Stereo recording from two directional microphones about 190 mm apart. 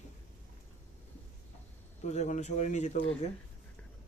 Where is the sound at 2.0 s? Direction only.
35° left (ahead or behind).